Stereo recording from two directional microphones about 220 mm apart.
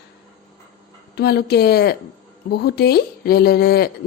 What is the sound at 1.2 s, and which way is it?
Speech, 45° left (ahead or behind).